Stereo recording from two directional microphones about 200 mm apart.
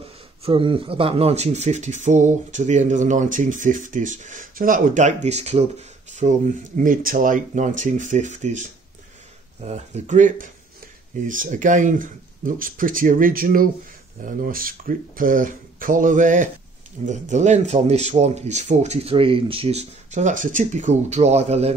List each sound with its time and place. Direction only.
0.4 s speech: 25° right (ahead or behind)